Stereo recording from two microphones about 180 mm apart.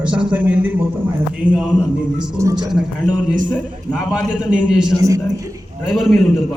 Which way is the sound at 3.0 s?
40° right (ahead or behind).